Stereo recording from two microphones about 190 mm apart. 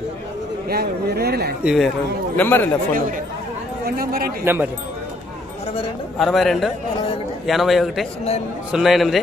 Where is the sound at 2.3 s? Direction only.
10° left (ahead or behind).